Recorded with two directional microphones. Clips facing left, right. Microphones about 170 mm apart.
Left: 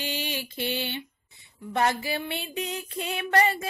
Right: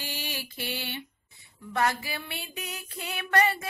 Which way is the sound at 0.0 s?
20° left (ahead or behind).